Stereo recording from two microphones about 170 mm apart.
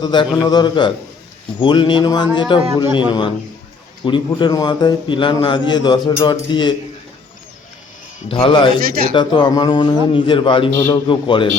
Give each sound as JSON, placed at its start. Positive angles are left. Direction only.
{"t": 0.0, "sound": "a man's voice", "side_deg": 25}
{"t": 8.3, "sound": "a man's voice", "side_deg": 30}
{"t": 8.8, "sound": "speech", "side_deg": -60}
{"t": 9.1, "sound": "a man's voice", "side_deg": 25}